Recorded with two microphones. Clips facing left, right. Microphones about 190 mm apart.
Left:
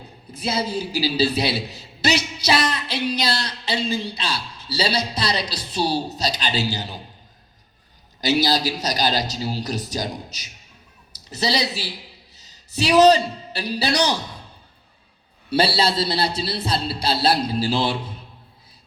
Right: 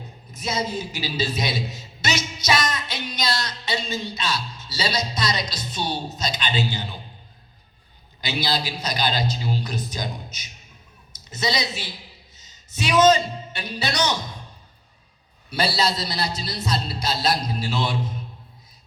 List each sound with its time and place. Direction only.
0.3 s a man's voice: 30° left (ahead or behind)
1.6 s music: 35° left (ahead or behind)
3.1 s a sound: 30° left (ahead or behind)
4.0 s a man's voice: 30° left (ahead or behind)
8.2 s a man's voice: 40° left (ahead or behind)
15.4 s a man's voice: 30° left (ahead or behind)